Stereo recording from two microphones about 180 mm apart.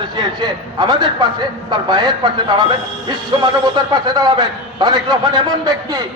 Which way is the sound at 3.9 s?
25° right (ahead or behind).